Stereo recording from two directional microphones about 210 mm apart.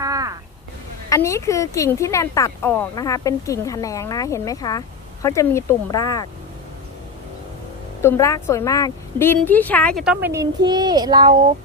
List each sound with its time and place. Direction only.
0.0 s a sound: 15° right (ahead or behind)
1.1 s speech: 15° left (ahead or behind)
8.0 s a woman's voice: 15° left (ahead or behind); by 11.5 s 25° right (ahead or behind)